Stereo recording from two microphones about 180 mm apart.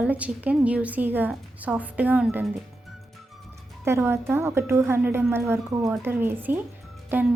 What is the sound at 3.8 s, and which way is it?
Speech, 15° right (ahead or behind).